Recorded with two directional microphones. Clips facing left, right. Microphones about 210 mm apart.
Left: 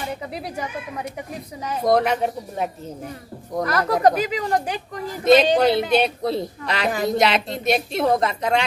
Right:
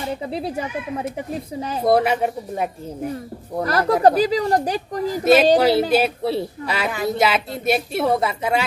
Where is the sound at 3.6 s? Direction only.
30° right (ahead or behind).